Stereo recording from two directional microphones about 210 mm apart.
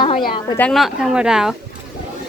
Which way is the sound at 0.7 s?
Centre (ahead or behind).